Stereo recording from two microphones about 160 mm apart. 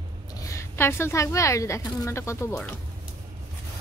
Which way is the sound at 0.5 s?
15° left (ahead or behind).